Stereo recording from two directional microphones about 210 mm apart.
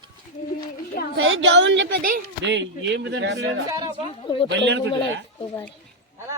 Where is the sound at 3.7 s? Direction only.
20° right (ahead or behind).